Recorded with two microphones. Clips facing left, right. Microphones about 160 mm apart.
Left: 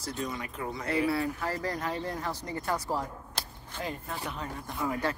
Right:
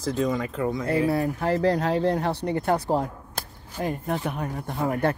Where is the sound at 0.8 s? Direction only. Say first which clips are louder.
Right 3 dB; 40° right (ahead or behind).